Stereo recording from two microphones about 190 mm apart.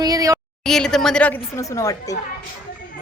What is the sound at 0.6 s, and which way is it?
A woman's voice, 5° left (ahead or behind).